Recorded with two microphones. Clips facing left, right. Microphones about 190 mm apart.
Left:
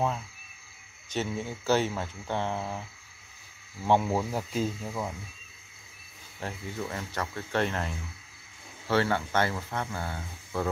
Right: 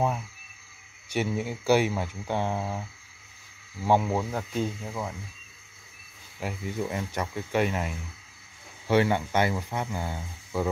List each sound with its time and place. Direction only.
1.0 s speech: 10° right (ahead or behind)
3.8 s speech: 10° right (ahead or behind)
4.1 s speech: 5° left (ahead or behind)
6.4 s speech: 15° right (ahead or behind)